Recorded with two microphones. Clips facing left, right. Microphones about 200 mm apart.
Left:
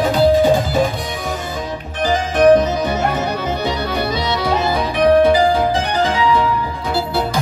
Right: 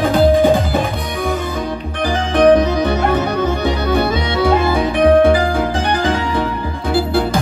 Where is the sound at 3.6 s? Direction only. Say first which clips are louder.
Right 4 dB; 50° right (ahead or behind).